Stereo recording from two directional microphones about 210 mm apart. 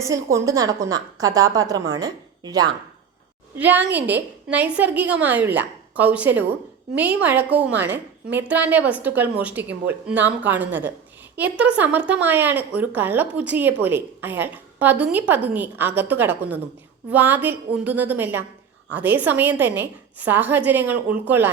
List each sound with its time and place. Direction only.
0.0 s a woman's voice: 15° right (ahead or behind)